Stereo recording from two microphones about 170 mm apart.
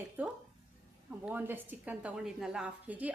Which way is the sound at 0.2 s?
10° right (ahead or behind).